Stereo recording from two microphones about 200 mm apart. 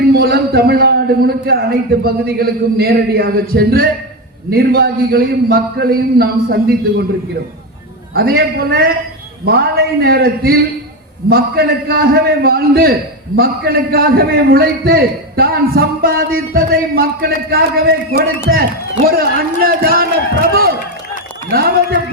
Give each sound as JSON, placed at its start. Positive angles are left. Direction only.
{"t": 0.1, "sound": "a man's voice", "side_deg": -50}
{"t": 8.1, "sound": "a man's voice", "side_deg": -50}